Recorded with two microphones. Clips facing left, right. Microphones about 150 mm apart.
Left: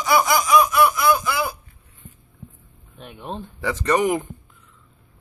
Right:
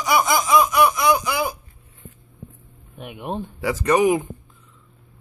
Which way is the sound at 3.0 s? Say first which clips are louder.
Right 4 dB; 15° right (ahead or behind).